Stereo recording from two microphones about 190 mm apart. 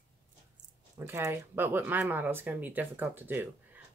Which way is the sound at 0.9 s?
15° right (ahead or behind).